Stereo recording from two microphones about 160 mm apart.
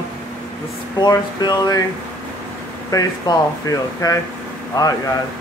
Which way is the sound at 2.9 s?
20° left (ahead or behind).